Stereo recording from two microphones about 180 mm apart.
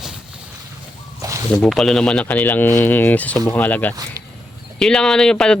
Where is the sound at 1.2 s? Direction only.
20° right (ahead or behind).